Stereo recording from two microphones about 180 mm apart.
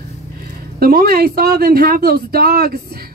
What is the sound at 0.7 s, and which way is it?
Speech, 55° right (ahead or behind).